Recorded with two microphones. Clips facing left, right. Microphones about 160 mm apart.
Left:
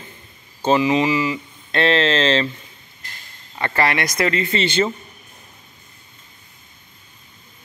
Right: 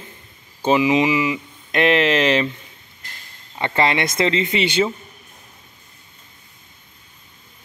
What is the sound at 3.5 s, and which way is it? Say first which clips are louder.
Speech: right 1 dB; 20° right (ahead or behind).